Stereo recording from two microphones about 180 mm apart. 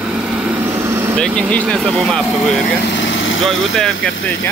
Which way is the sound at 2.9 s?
85° left.